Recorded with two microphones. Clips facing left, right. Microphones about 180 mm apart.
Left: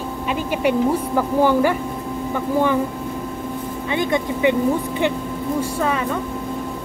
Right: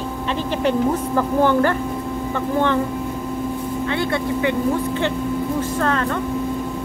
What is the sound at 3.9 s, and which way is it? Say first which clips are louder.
Speech: left 3 dB; 15° left (ahead or behind).